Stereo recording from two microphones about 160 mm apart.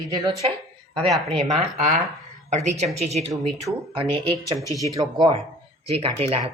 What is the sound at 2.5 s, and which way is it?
Speech, 45° right (ahead or behind).